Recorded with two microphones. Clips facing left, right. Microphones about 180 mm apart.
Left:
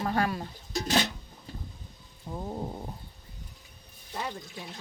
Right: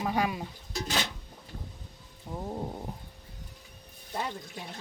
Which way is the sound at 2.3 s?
Centre (ahead or behind).